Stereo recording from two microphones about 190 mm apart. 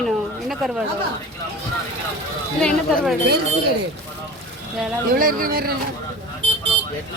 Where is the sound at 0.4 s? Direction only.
Centre (ahead or behind).